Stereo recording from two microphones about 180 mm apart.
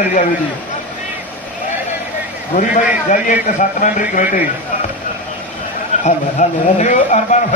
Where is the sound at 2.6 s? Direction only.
45° left (ahead or behind).